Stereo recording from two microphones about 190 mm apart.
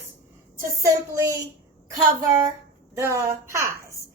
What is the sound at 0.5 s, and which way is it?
Speech, 15° right (ahead or behind).